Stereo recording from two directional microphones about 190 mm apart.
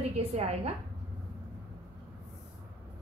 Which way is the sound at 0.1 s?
35° right (ahead or behind).